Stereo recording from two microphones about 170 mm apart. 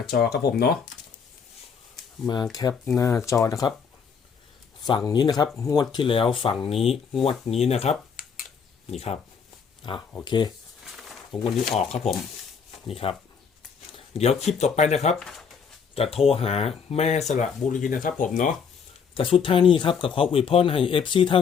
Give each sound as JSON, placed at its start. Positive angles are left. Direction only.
{"t": 0.1, "sound": "speech", "side_deg": 70}
{"t": 2.2, "sound": "speech", "side_deg": 25}
{"t": 4.8, "sound": "speech", "side_deg": 25}
{"t": 10.2, "sound": "speech", "side_deg": 25}
{"t": 10.8, "sound": "a sound", "side_deg": 0}
{"t": 11.8, "sound": "speech", "side_deg": 40}
{"t": 15.1, "sound": "speech", "side_deg": 0}
{"t": 16.0, "sound": "speech", "side_deg": 35}
{"t": 19.1, "sound": "speech", "side_deg": 30}